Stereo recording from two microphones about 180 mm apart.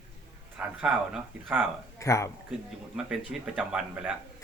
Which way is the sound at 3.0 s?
5° right (ahead or behind).